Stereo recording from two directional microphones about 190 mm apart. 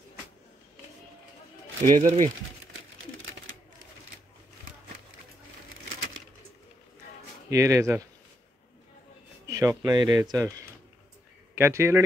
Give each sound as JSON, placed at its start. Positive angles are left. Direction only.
{"t": 1.9, "sound": "speech", "side_deg": -40}
{"t": 7.4, "sound": "speech", "side_deg": -15}
{"t": 9.5, "sound": "speech", "side_deg": -15}
{"t": 11.5, "sound": "speech", "side_deg": -15}